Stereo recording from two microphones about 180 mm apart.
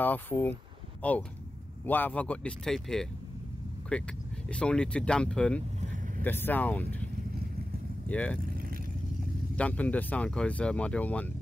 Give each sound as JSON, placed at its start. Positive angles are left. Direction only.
{"t": 0.0, "sound": "speech", "side_deg": 10}
{"t": 5.8, "sound": "vehicle", "side_deg": -40}
{"t": 6.2, "sound": "speech", "side_deg": 10}
{"t": 8.1, "sound": "speech", "side_deg": 5}
{"t": 9.6, "sound": "speech", "side_deg": 10}